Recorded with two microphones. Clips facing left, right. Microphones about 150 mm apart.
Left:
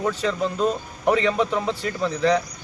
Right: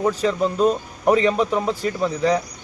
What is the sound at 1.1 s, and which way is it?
A man's voice, 10° right (ahead or behind).